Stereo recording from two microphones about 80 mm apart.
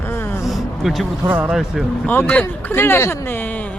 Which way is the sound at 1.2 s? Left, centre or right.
Right.